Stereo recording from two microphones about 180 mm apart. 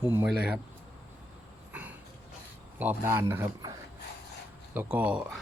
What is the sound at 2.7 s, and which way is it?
A man's voice, 10° right (ahead or behind).